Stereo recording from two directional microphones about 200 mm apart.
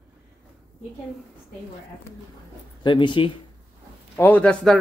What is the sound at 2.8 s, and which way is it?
Speech, 25° left (ahead or behind).